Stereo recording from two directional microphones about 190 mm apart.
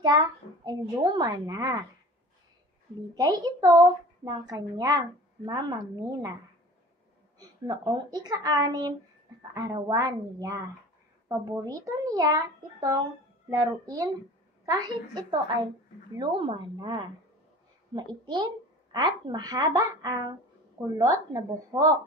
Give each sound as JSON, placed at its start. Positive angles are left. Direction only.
{"t": 0.0, "sound": "a woman's voice", "side_deg": -20}
{"t": 3.2, "sound": "a woman's voice", "side_deg": -20}
{"t": 7.3, "sound": "a woman's voice", "side_deg": -20}